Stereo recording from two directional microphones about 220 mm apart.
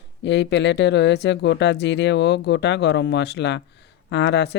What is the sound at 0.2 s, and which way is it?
Speech, 50° left (ahead or behind).